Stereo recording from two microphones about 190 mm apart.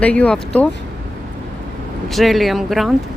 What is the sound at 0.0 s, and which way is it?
Speech, 5° left (ahead or behind).